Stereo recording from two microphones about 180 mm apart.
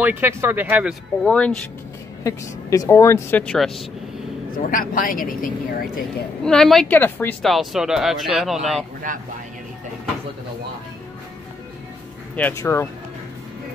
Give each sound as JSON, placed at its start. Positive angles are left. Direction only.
{"t": 0.0, "sound": "speech", "side_deg": -10}
{"t": 1.2, "sound": "speech", "side_deg": 5}
{"t": 2.2, "sound": "speech", "side_deg": 20}
{"t": 4.5, "sound": "speech", "side_deg": 50}
{"t": 6.4, "sound": "speech", "side_deg": 5}
{"t": 7.4, "sound": "speech", "side_deg": 0}
{"t": 9.1, "sound": "speech", "side_deg": -45}
{"t": 12.4, "sound": "speech", "side_deg": 15}